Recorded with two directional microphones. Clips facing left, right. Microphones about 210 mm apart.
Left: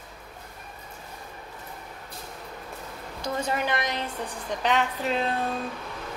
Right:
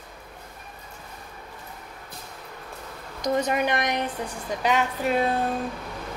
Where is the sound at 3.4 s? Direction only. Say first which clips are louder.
Right 3 dB; 20° right (ahead or behind).